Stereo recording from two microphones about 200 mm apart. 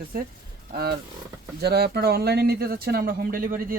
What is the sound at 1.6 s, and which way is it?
Speech, 55° right (ahead or behind).